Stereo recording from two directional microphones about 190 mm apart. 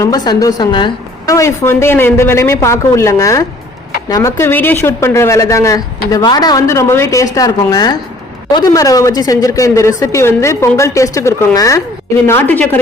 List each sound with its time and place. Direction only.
0.0 s speech: 20° left (ahead or behind)